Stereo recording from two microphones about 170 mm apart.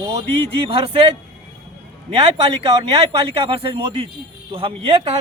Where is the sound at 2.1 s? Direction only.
35° right (ahead or behind).